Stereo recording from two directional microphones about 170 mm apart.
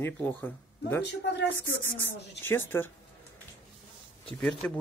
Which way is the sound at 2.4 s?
15° left (ahead or behind).